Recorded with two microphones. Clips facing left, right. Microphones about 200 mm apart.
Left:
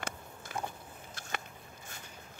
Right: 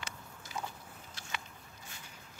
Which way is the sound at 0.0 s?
55° left (ahead or behind).